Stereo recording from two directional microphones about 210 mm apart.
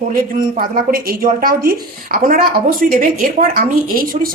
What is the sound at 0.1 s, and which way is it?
A woman's voice, 40° right (ahead or behind).